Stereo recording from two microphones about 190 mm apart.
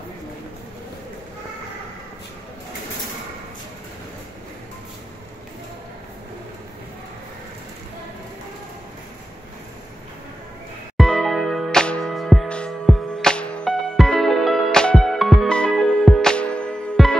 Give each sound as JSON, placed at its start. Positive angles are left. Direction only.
{"t": 11.0, "sound": "music", "side_deg": 0}